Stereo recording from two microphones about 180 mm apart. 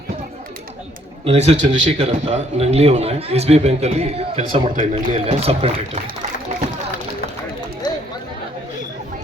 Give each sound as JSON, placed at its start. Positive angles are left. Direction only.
{"t": 1.2, "sound": "a man's voice", "side_deg": -35}
{"t": 7.8, "sound": "chatter", "side_deg": 25}